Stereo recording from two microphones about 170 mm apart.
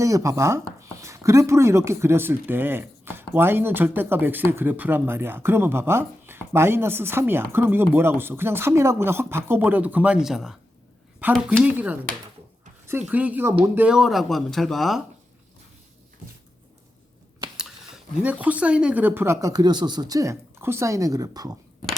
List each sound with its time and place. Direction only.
0.0 s speech: 20° right (ahead or behind)
13.1 s speech: 10° right (ahead or behind)
17.6 s speech: 5° right (ahead or behind)